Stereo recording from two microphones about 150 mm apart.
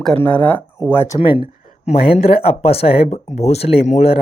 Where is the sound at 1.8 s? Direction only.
40° left (ahead or behind).